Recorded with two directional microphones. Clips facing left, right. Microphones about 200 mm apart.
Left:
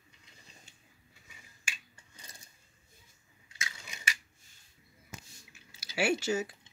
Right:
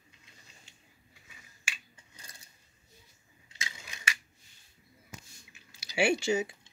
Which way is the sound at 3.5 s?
25° right (ahead or behind).